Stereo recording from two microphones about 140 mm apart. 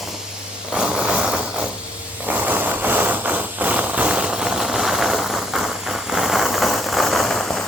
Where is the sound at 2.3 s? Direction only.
10° right (ahead or behind).